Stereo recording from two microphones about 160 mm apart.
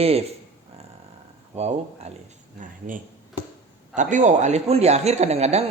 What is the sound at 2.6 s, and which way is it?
A woman's voice, 55° right (ahead or behind).